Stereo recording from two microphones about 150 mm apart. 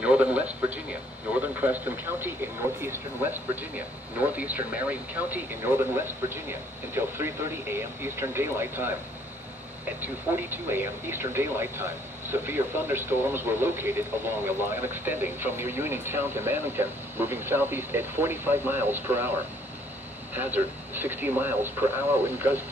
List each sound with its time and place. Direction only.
0.0 s speech: 10° right (ahead or behind)
10.0 s speech: 15° right (ahead or behind)
20.3 s speech: 15° right (ahead or behind)